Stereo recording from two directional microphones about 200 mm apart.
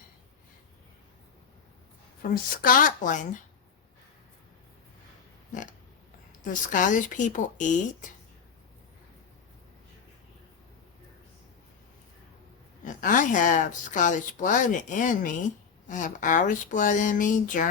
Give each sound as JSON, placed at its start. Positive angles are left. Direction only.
{"t": 2.2, "sound": "speech", "side_deg": 45}
{"t": 5.5, "sound": "a sound", "side_deg": 40}
{"t": 6.4, "sound": "a woman's voice", "side_deg": 40}
{"t": 12.8, "sound": "a woman's voice", "side_deg": 40}